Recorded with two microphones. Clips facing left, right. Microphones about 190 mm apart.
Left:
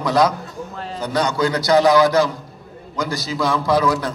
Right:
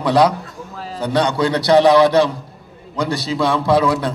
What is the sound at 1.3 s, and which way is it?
A man's voice, 30° right (ahead or behind).